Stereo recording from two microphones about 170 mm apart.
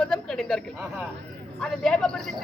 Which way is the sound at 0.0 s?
5° left (ahead or behind).